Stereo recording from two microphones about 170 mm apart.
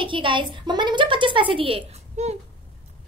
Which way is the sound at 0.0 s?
30° right (ahead or behind).